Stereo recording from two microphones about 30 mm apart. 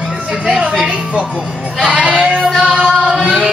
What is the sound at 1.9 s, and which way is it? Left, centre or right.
Sheep, right.